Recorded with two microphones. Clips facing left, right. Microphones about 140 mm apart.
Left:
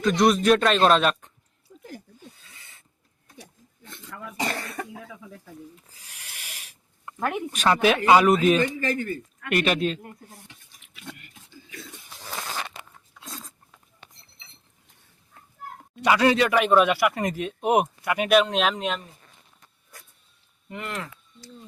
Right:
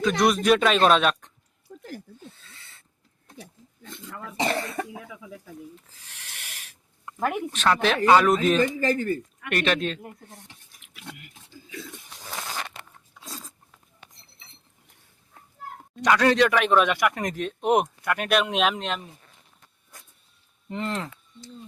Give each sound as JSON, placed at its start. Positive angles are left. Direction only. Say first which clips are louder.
{"t": 0.0, "sound": "speech", "louder": "left 2 dB", "side_deg": 0}
{"t": 2.5, "sound": "a sound", "louder": "right 1 dB", "side_deg": 15}
{"t": 4.4, "sound": "speech", "louder": "right 4 dB", "side_deg": -20}
{"t": 5.9, "sound": "speech", "louder": "even", "side_deg": 10}
{"t": 7.0, "sound": "a sound", "louder": "right 1 dB", "side_deg": 0}
{"t": 7.5, "sound": "speech", "louder": "left 3 dB", "side_deg": 10}
{"t": 8.8, "sound": "speech", "louder": "right 3 dB", "side_deg": -40}
{"t": 9.5, "sound": "speech", "louder": "left 2 dB", "side_deg": 5}
{"t": 13.2, "sound": "a sound", "louder": "left 1 dB", "side_deg": 0}
{"t": 16.0, "sound": "speech", "louder": "even", "side_deg": 10}
{"t": 20.7, "sound": "speech", "louder": "right 4 dB", "side_deg": -30}